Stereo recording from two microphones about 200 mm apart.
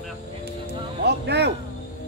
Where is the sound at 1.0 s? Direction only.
55° right (ahead or behind).